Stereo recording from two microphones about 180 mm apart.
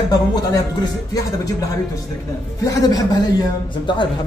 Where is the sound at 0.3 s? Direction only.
20° left (ahead or behind).